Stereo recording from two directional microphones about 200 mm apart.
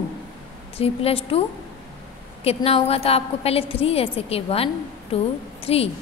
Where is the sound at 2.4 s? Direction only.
30° left (ahead or behind).